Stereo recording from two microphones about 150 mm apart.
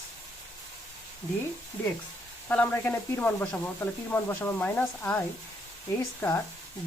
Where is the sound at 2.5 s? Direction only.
10° left (ahead or behind).